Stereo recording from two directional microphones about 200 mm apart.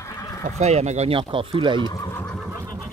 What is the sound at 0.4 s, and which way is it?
Speech, 35° right (ahead or behind).